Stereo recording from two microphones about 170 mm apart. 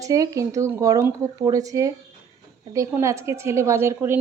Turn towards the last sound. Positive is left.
turn(degrees=-15)  # may be behind; listen again after turning